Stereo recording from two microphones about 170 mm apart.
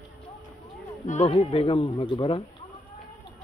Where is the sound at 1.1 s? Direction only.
35° left (ahead or behind).